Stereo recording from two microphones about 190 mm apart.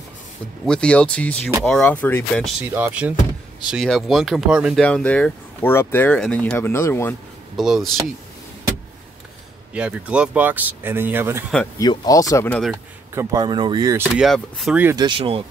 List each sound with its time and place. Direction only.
0.7 s speech: 5° left (ahead or behind)
2.7 s speech: 10° right (ahead or behind); by 7.2 s 15° left (ahead or behind)
7.5 s speech: centre (ahead or behind)
9.8 s speech: 5° right (ahead or behind)
11.8 s speech: 20° left (ahead or behind)
12.4 s speech: 5° left (ahead or behind)
13.1 s speech: 15° right (ahead or behind)
14.1 s speech: centre (ahead or behind)
15.0 s speech: 25° right (ahead or behind)